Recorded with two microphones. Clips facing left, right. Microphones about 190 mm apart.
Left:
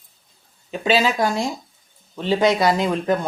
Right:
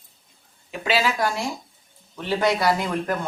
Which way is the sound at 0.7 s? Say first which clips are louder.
Left 4 dB; 20° left (ahead or behind).